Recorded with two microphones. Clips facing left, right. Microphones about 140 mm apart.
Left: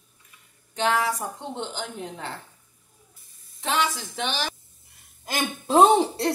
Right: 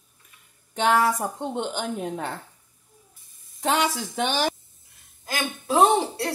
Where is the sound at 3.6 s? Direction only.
45° right (ahead or behind).